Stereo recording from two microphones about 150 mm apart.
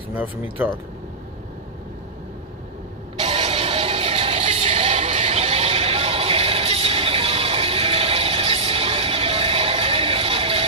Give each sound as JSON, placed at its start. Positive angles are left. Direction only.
{"t": 0.1, "sound": "speech", "side_deg": -10}
{"t": 3.2, "sound": "music", "side_deg": -35}